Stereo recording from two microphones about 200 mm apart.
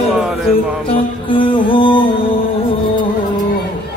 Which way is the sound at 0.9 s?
25° left (ahead or behind).